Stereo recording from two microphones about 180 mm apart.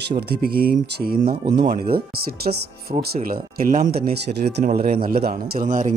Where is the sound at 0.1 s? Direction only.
60° right (ahead or behind).